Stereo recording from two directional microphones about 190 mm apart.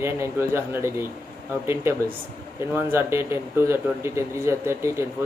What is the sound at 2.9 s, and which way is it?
Speech, 15° right (ahead or behind).